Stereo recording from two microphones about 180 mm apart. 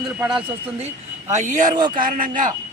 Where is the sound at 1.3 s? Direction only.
45° right (ahead or behind).